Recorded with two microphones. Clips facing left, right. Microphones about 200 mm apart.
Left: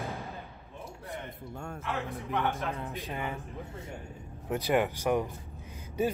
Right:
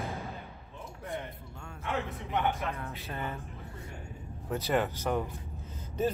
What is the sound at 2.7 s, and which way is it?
Speech, 15° left (ahead or behind).